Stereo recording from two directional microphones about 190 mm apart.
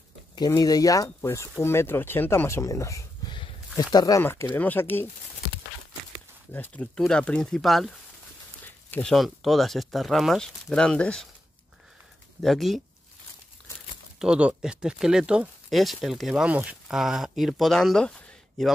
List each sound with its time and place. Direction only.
0.4 s speech: 20° left (ahead or behind)
6.5 s speech: 10° left (ahead or behind)
12.4 s speech: centre (ahead or behind)
14.2 s speech: 5° right (ahead or behind)